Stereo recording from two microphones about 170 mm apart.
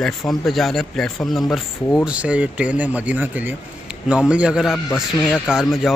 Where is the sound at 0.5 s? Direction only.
Centre (ahead or behind).